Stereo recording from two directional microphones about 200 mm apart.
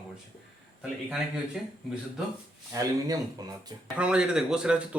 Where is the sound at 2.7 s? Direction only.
15° right (ahead or behind).